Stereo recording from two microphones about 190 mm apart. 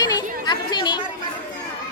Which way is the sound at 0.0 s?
20° left (ahead or behind).